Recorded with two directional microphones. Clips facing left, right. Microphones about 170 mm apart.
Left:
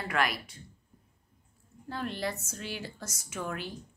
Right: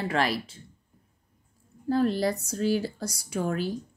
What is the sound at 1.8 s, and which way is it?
Speech, 40° right (ahead or behind).